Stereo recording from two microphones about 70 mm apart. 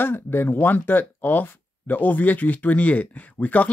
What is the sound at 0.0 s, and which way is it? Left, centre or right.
Speech, left.